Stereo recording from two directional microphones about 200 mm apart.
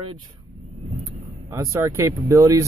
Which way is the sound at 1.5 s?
15° right (ahead or behind).